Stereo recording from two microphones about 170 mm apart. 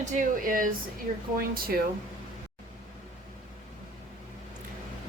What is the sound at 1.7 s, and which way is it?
Speech, 65° right (ahead or behind).